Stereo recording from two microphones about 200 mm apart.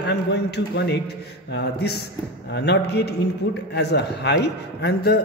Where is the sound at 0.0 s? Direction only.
60° left (ahead or behind).